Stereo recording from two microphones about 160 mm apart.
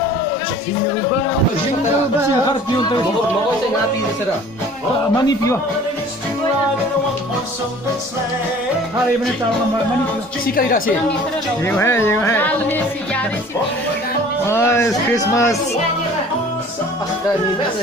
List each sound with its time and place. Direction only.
2.5 s speech: 30° left (ahead or behind)
5.1 s speech: 20° left (ahead or behind)
10.4 s a woman's voice: 65° left (ahead or behind)
11.7 s speech: 15° left (ahead or behind)
14.5 s speech: 15° left (ahead or behind)